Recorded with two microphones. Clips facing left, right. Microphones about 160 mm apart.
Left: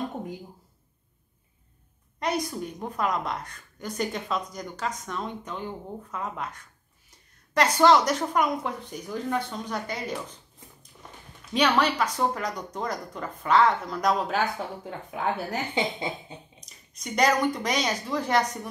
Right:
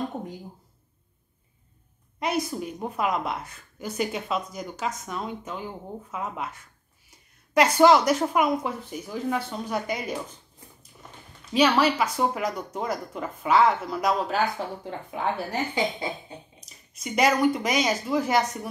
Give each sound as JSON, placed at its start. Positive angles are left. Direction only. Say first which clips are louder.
{"t": 2.1, "sound": "a woman's voice", "louder": "right 1 dB", "side_deg": -5}
{"t": 11.5, "sound": "a woman's voice", "louder": "right 2 dB", "side_deg": -5}
{"t": 15.7, "sound": "speech", "louder": "right 1 dB", "side_deg": 20}
{"t": 16.5, "sound": "a woman's voice", "louder": "right 1 dB", "side_deg": -5}